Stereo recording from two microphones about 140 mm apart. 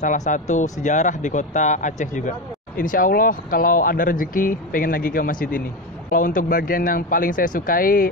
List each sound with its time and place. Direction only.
0.0 s speech: 60° left (ahead or behind)
2.8 s speech: 80° left